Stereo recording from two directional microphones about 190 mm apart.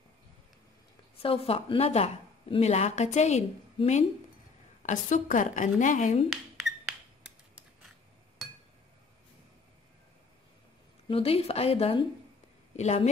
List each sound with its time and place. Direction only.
1.2 s speech: 30° left (ahead or behind)
6.3 s a sound: centre (ahead or behind)
11.1 s speech: 30° left (ahead or behind)